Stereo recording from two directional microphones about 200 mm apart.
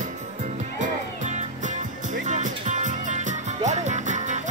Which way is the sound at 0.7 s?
40° right (ahead or behind).